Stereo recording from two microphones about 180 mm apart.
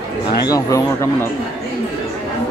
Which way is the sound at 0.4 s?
20° left (ahead or behind).